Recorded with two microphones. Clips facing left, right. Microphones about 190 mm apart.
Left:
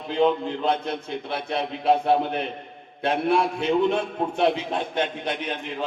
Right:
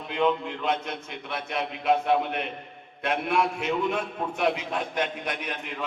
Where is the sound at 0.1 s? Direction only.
30° left (ahead or behind).